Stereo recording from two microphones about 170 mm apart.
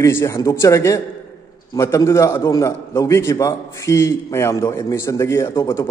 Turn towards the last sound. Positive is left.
turn(degrees=15)  # may be behind; listen again after turning